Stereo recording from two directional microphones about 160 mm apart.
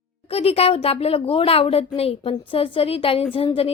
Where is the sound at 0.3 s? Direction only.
40° left (ahead or behind).